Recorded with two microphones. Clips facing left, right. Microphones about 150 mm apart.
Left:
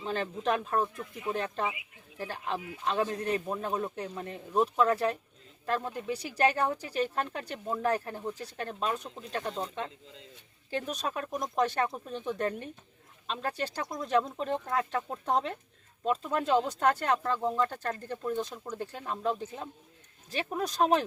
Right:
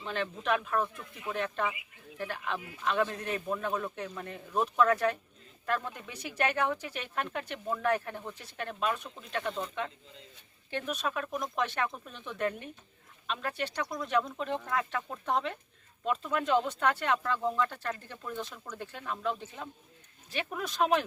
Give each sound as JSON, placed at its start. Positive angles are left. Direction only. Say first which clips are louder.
{"t": 0.0, "sound": "speech", "louder": "left 3 dB", "side_deg": 40}